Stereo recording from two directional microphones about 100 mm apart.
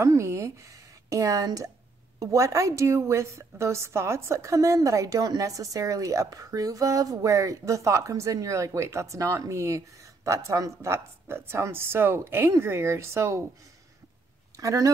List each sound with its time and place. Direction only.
0.0 s a woman's voice: 30° right (ahead or behind)
14.6 s speech: 35° right (ahead or behind)